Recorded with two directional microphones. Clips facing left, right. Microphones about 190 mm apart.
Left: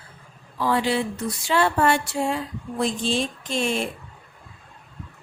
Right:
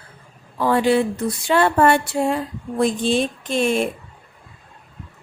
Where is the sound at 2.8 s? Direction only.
55° right (ahead or behind).